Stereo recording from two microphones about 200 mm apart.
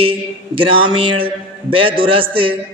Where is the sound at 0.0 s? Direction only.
25° right (ahead or behind).